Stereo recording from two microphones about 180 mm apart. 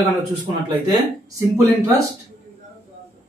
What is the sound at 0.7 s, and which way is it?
Speech, 25° right (ahead or behind).